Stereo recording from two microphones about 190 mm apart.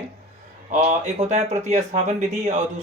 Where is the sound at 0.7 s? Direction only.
35° right (ahead or behind).